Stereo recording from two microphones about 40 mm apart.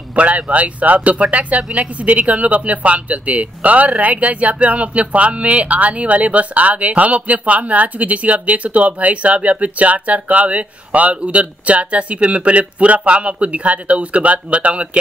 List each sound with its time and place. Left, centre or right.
0.1 s speech: right